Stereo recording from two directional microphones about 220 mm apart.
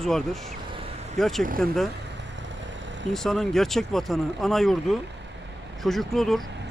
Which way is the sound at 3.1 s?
Centre (ahead or behind).